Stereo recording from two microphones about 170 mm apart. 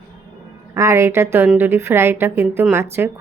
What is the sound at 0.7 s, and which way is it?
A woman's voice, 15° right (ahead or behind).